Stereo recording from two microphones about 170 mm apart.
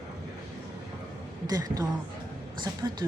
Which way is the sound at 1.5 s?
20° right (ahead or behind).